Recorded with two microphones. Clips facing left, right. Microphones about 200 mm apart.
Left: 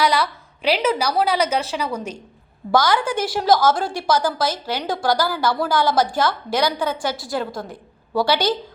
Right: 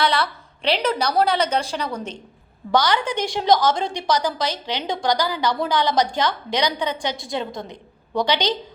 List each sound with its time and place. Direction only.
0.0 s a woman's voice: 10° left (ahead or behind)